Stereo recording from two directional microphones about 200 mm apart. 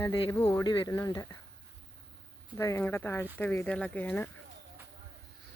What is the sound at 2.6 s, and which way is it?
Speech, 15° left (ahead or behind).